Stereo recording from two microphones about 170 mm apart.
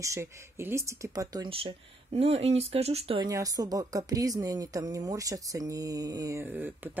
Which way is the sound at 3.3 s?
20° right (ahead or behind).